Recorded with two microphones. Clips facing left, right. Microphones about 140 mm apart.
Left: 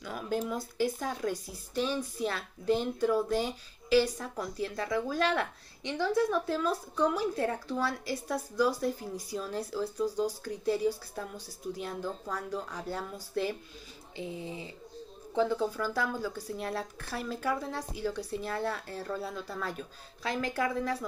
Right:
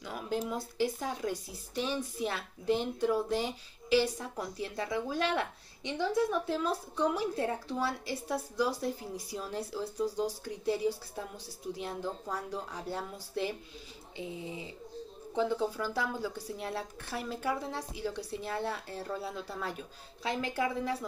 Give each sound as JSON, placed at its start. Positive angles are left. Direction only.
{"t": 0.0, "sound": "speech", "side_deg": -25}